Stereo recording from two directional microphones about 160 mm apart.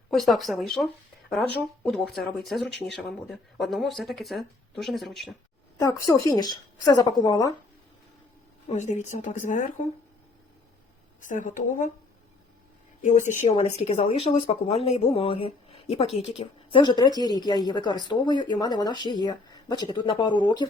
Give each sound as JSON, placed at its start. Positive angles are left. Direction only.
{"t": 0.1, "sound": "speech", "side_deg": 0}
{"t": 5.8, "sound": "speech", "side_deg": 20}
{"t": 8.7, "sound": "speech", "side_deg": 50}
{"t": 11.2, "sound": "speech", "side_deg": 55}
{"t": 13.0, "sound": "speech", "side_deg": 50}